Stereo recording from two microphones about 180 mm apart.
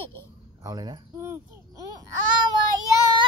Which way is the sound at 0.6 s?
20° right (ahead or behind).